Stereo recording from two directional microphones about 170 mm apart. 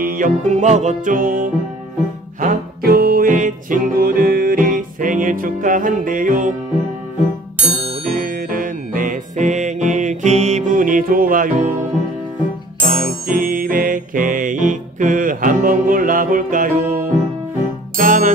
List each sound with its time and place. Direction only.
0.0 s music: 55° right (ahead or behind)
8.2 s music: 55° right (ahead or behind)
12.8 s music: 55° right (ahead or behind)